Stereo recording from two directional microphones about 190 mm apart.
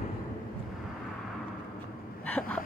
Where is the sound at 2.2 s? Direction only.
10° left (ahead or behind).